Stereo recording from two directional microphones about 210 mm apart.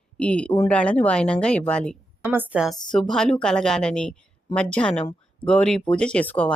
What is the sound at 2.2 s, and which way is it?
A woman's voice, 10° right (ahead or behind).